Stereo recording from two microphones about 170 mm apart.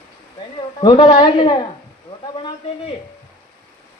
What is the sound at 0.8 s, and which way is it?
Speech, 30° left (ahead or behind).